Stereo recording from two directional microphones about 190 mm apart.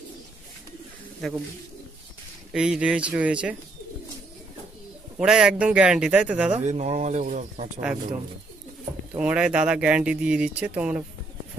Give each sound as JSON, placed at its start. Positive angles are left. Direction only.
{"t": 2.5, "sound": "speech", "side_deg": -5}
{"t": 5.1, "sound": "speech", "side_deg": -5}
{"t": 6.6, "sound": "speech", "side_deg": -35}
{"t": 9.1, "sound": "speech", "side_deg": -5}